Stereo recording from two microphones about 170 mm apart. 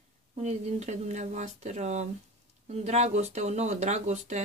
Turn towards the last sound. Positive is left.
turn(degrees=-40)  # may be behind; listen again after turning